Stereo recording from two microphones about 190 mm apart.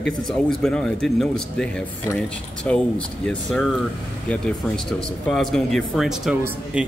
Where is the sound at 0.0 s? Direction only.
5° left (ahead or behind).